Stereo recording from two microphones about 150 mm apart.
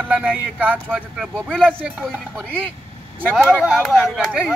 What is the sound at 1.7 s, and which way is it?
Speech, 10° right (ahead or behind).